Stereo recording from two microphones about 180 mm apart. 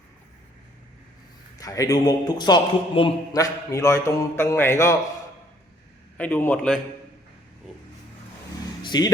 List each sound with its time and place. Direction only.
1.5 s a man's voice: 20° left (ahead or behind)
6.1 s a man's voice: 10° left (ahead or behind)
8.8 s vehicle: 25° left (ahead or behind)